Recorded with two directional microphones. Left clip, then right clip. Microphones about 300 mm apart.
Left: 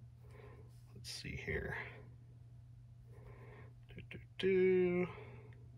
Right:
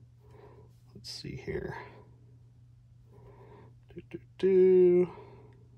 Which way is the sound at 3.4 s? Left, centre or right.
Centre.